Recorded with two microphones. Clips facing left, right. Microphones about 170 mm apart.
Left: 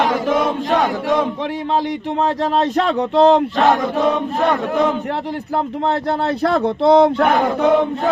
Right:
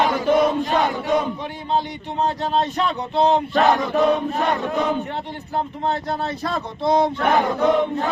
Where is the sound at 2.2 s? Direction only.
90° left.